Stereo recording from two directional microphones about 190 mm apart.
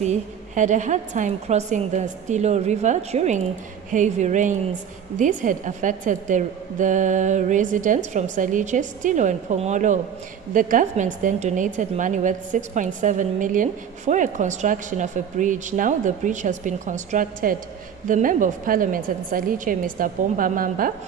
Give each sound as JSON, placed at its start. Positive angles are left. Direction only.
{"t": 0.0, "sound": "a woman's voice", "side_deg": -40}